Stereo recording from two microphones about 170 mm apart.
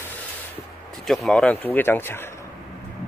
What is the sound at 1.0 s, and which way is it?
Speech, centre (ahead or behind).